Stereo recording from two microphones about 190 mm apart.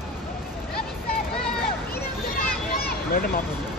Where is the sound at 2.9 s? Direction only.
50° left (ahead or behind).